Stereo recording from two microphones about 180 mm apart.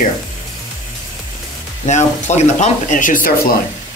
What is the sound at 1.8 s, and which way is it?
Speech, 40° left (ahead or behind).